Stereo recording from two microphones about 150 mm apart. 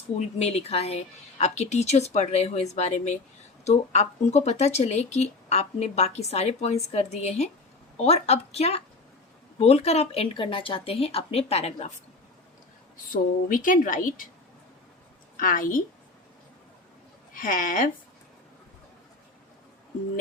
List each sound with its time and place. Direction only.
0.2 s a woman's voice: 45° left (ahead or behind)
13.1 s speech: 65° left (ahead or behind)
15.4 s speech: 65° left (ahead or behind)
17.3 s speech: 65° left (ahead or behind)